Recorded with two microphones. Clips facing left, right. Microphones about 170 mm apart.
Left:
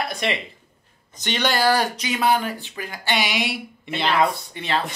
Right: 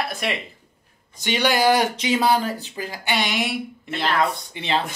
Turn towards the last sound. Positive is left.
turn(degrees=-25)  # may be behind; listen again after turning